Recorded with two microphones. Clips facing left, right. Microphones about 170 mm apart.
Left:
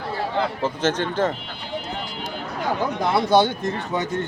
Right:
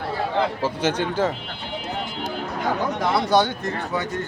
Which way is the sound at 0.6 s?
10° right (ahead or behind).